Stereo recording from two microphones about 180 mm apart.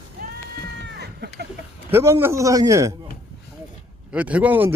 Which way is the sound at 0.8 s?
65° right (ahead or behind).